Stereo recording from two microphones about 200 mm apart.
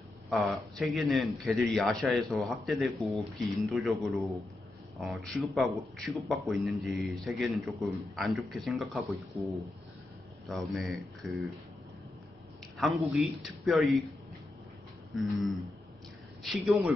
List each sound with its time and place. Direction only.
0.3 s a man's voice: centre (ahead or behind)
10.4 s a man's voice: centre (ahead or behind)
12.7 s a man's voice: centre (ahead or behind)
15.1 s a man's voice: centre (ahead or behind)